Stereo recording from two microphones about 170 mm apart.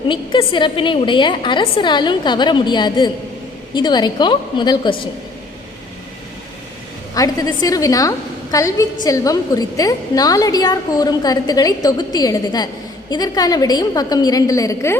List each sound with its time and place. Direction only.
0.1 s a woman's voice: 30° left (ahead or behind)
7.1 s a woman's voice: 20° left (ahead or behind)